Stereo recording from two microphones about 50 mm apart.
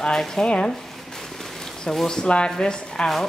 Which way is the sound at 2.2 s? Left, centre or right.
Centre.